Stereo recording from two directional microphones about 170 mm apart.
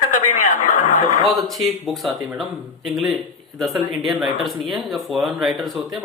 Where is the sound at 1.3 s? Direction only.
Centre (ahead or behind).